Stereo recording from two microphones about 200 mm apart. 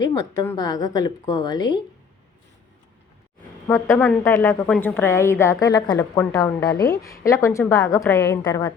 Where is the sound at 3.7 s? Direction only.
10° left (ahead or behind).